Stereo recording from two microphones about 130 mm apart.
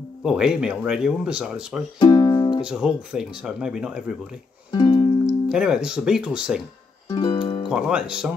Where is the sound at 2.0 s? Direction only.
35° left (ahead or behind).